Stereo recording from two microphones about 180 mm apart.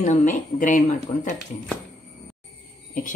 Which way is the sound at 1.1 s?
25° left (ahead or behind).